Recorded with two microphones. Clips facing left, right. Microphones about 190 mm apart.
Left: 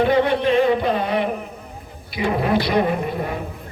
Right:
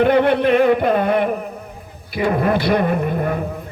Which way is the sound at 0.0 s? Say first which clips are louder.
Right 3 dB; 55° right (ahead or behind).